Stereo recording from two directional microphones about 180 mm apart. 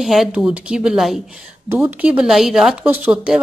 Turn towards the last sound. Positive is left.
turn(degrees=-10)  # may be behind; listen again after turning